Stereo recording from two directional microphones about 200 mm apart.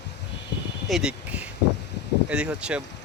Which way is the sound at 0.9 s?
5° right (ahead or behind).